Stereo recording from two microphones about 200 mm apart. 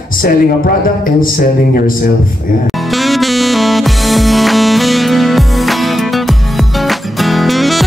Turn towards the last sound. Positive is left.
turn(degrees=0)  # may be behind; listen again after turning